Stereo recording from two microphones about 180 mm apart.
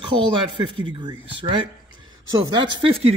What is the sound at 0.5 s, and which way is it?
Speech, 25° right (ahead or behind).